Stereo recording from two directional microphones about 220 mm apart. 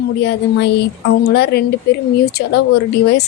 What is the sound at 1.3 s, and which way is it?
Speech, 50° left (ahead or behind).